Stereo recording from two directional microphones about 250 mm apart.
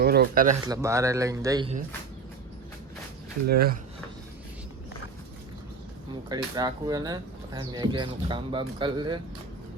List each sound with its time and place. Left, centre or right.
0.0 s a sound: right
0.7 s speech: centre
3.4 s speech: right
6.2 s speech: centre